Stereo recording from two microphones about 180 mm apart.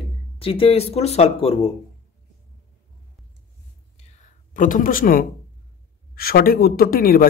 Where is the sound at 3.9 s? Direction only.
40° left (ahead or behind).